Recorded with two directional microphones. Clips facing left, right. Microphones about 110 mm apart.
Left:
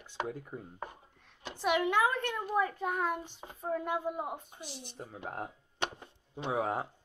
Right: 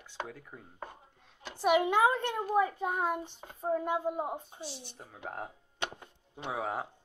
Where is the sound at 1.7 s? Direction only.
20° right (ahead or behind).